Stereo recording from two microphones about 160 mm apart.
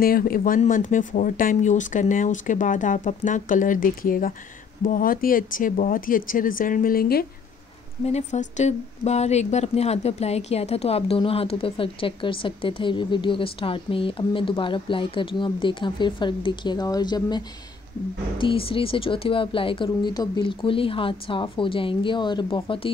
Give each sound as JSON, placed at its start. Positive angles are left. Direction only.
{"t": 0.0, "sound": "speech", "side_deg": 65}
{"t": 8.0, "sound": "speech", "side_deg": 45}